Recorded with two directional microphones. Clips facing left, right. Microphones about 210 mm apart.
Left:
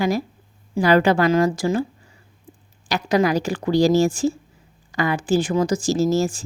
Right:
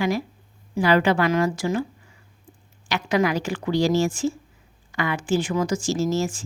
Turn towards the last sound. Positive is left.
turn(degrees=35)  # may be behind; listen again after turning